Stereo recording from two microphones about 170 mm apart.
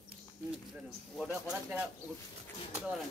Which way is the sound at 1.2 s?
5° right (ahead or behind).